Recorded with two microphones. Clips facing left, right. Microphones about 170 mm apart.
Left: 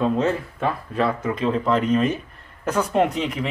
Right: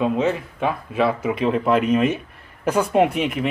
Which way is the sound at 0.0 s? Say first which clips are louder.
Right 1 dB; 5° right (ahead or behind).